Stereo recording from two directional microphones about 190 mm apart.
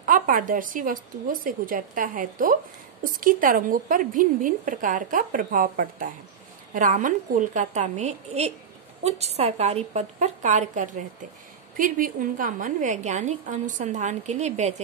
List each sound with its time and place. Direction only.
0.0 s a woman's voice: 45° right (ahead or behind)